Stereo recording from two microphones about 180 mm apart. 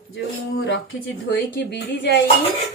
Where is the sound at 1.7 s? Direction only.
70° left (ahead or behind).